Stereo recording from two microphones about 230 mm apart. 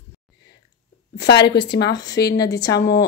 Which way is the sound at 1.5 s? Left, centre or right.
Left.